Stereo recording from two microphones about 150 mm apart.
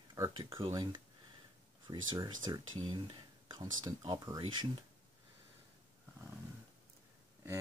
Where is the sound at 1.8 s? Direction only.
25° right (ahead or behind).